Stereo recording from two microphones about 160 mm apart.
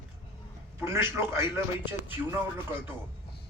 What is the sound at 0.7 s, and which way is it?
Speech, 15° right (ahead or behind).